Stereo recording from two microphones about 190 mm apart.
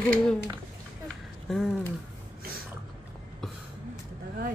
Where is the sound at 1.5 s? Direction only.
Centre (ahead or behind).